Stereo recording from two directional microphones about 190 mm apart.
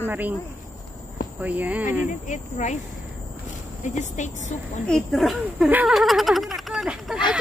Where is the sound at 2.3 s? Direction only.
40° left (ahead or behind).